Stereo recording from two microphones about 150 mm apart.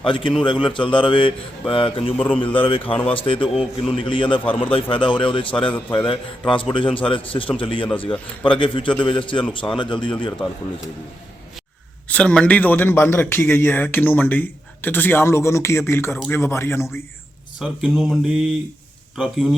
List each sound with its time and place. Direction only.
0.0 s a man's voice: 35° left (ahead or behind)
2.1 s a man's voice: 10° left (ahead or behind)
2.4 s a man's voice: 35° left (ahead or behind)
12.0 s a man's voice: 5° left (ahead or behind)
17.6 s speech: 5° right (ahead or behind)